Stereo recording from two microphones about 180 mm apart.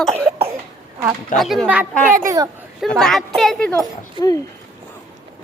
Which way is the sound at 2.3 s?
15° right (ahead or behind).